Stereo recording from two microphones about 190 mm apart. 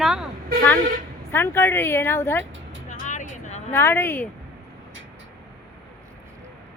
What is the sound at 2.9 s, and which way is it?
Music, 40° left (ahead or behind).